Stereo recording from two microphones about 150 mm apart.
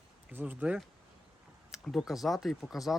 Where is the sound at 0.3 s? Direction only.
10° right (ahead or behind).